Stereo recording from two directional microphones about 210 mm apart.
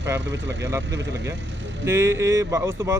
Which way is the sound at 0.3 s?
55° right (ahead or behind).